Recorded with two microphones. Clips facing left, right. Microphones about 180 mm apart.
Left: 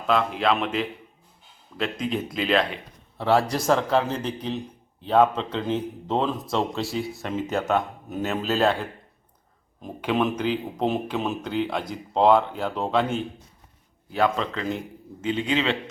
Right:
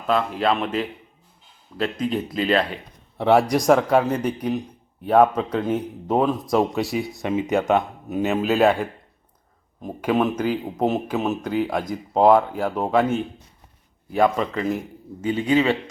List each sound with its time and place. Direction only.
0.1 s speech: centre (ahead or behind)
3.2 s speech: 20° right (ahead or behind)